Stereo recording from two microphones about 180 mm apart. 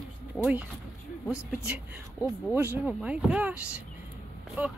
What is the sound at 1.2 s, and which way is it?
Speech, 15° left (ahead or behind).